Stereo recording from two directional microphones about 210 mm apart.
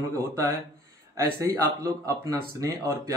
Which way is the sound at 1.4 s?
15° right (ahead or behind).